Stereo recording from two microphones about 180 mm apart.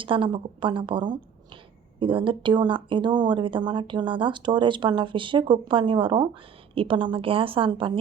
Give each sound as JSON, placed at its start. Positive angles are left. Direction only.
{"t": 0.0, "sound": "speech", "side_deg": -30}